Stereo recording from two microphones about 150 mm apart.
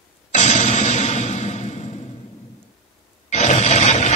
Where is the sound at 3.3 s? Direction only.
50° left (ahead or behind).